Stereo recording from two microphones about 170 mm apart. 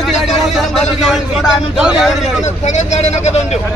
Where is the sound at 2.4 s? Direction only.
45° left (ahead or behind).